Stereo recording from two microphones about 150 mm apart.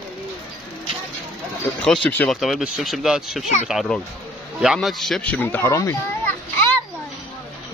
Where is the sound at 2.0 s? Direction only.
10° left (ahead or behind).